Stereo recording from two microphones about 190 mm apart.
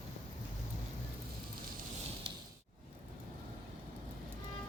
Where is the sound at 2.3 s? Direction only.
25° right (ahead or behind).